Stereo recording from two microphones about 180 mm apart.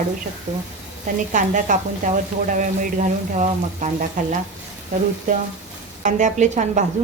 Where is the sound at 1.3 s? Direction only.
45° right (ahead or behind).